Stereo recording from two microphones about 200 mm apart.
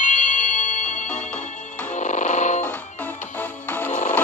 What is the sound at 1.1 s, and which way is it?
Music, 5° left (ahead or behind).